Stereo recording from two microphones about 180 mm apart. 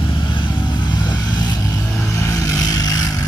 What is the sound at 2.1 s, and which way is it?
Vehicle, 15° left (ahead or behind).